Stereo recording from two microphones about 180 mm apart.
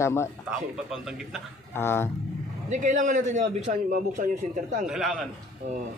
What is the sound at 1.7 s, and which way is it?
Speech, 15° left (ahead or behind).